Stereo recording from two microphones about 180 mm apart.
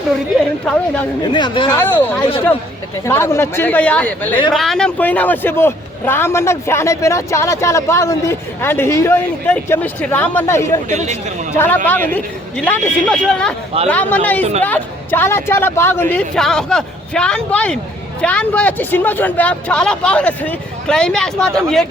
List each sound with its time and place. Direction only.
1.2 s speech: 25° left (ahead or behind)
1.7 s a man's voice: 10° left (ahead or behind)
10.8 s speech: 40° right (ahead or behind)
11.5 s a man's voice: 10° left (ahead or behind)